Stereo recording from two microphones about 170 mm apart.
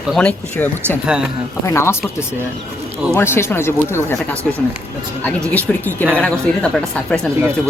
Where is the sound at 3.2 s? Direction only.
15° left (ahead or behind).